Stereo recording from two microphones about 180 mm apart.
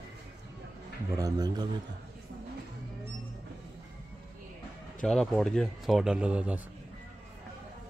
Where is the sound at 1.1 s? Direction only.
20° right (ahead or behind).